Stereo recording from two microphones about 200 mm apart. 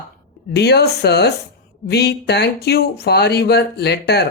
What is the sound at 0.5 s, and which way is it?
Speech, 55° left (ahead or behind).